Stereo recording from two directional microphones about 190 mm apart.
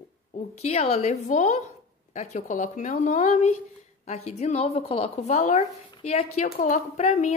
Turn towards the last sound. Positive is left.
turn(degrees=35)  # may be behind; listen again after turning